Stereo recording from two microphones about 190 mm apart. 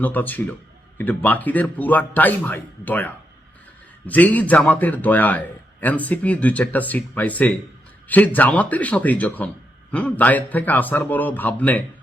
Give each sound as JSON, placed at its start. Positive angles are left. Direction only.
{"t": 0.0, "sound": "a man's voice", "side_deg": 10}